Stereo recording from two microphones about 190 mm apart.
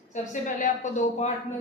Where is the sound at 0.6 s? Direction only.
40° left (ahead or behind).